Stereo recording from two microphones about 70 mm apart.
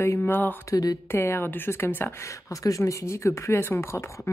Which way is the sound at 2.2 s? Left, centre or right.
Left.